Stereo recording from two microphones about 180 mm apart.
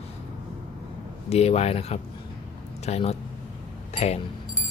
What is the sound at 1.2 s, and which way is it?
A man's voice, 35° left (ahead or behind).